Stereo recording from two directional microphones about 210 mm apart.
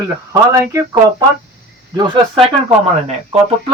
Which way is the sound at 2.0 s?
25° right (ahead or behind).